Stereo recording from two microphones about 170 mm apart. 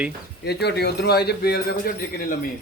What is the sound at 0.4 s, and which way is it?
Speech, 75° left (ahead or behind).